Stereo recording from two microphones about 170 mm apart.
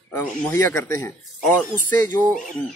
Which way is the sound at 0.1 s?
15° left (ahead or behind).